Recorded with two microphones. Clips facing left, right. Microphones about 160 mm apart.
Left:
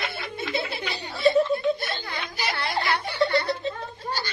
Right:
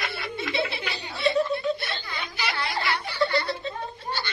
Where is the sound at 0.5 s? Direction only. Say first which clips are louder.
Even; 45° left (ahead or behind).